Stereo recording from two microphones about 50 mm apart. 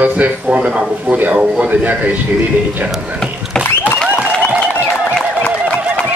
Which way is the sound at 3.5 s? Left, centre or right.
Centre.